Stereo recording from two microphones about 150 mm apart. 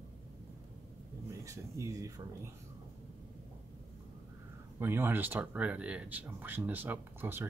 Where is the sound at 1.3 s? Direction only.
20° right (ahead or behind).